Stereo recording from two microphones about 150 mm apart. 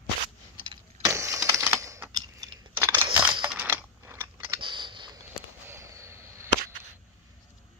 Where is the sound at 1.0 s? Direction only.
20° right (ahead or behind).